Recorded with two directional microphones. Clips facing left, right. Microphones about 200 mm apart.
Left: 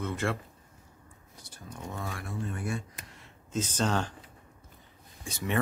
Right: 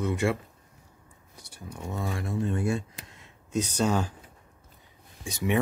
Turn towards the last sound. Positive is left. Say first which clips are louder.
# right 6 dB
turn(degrees=-15)  # may be behind; listen again after turning